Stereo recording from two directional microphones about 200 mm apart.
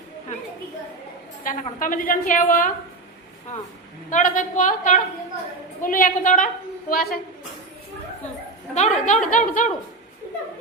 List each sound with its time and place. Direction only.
1.5 s a woman's voice: 45° left (ahead or behind)
4.1 s a woman's voice: 40° left (ahead or behind)
8.7 s a woman's voice: 35° left (ahead or behind)